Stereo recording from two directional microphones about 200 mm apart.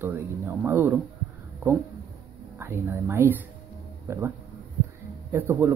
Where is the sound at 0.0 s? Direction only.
10° right (ahead or behind).